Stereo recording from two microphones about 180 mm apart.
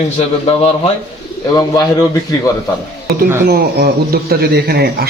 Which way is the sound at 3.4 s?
60° right (ahead or behind).